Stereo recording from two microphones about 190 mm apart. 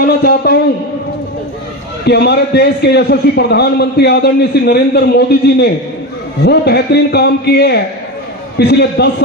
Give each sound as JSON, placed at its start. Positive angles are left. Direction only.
{"t": 0.0, "sound": "a man's voice", "side_deg": 55}
{"t": 2.0, "sound": "a man's voice", "side_deg": 60}